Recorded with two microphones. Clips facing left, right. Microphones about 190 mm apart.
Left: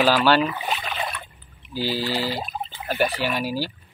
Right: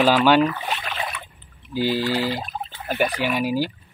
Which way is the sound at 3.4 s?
15° right (ahead or behind).